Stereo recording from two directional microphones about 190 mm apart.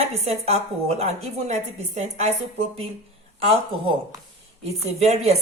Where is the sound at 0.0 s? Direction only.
35° right (ahead or behind).